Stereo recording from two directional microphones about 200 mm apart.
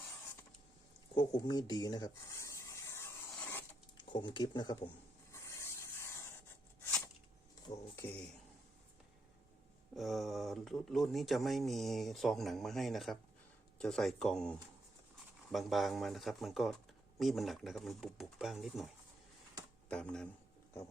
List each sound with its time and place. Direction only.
1.1 s rub: 20° left (ahead or behind)
3.9 s speech: 25° left (ahead or behind)
5.3 s rub: 15° left (ahead or behind)
7.9 s speech: 10° left (ahead or behind)
9.9 s speech: centre (ahead or behind)
19.9 s speech: 5° left (ahead or behind)